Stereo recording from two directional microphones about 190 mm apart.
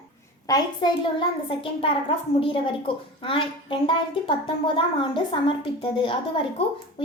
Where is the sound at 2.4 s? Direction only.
25° left (ahead or behind).